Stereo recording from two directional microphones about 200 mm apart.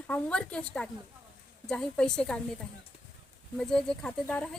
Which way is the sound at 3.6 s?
5° left (ahead or behind).